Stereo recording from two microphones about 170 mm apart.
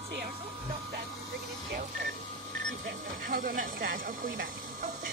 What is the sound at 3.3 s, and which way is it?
Snake, 55° right (ahead or behind).